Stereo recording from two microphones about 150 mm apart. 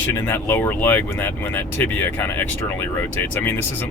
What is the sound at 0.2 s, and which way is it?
Speech, 15° left (ahead or behind).